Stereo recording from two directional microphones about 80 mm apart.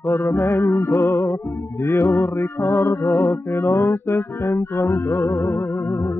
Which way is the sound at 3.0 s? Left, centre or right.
Left.